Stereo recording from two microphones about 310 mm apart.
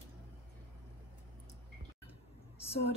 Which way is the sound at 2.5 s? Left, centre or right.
Centre.